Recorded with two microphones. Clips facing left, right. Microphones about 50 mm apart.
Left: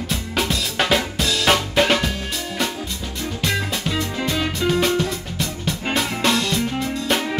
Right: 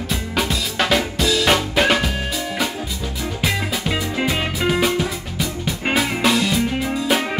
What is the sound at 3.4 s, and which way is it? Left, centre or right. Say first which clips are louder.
Music: right 1 dB; centre.